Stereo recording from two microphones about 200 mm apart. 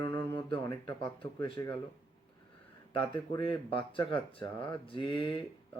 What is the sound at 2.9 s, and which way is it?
Speech, 25° left (ahead or behind).